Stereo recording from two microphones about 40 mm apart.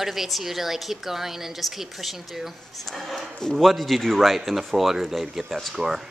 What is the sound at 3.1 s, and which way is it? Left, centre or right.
Speech, centre.